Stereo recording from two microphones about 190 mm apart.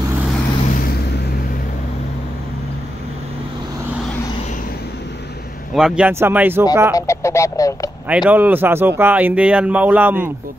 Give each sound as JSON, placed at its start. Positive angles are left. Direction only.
{"t": 5.8, "sound": "speech", "side_deg": -5}
{"t": 7.0, "sound": "speech", "side_deg": 15}
{"t": 8.1, "sound": "speech", "side_deg": -5}